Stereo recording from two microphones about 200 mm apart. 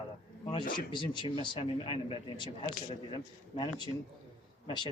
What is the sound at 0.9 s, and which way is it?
Speech, 25° left (ahead or behind).